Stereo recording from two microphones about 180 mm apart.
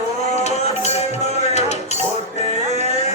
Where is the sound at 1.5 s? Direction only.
40° left (ahead or behind).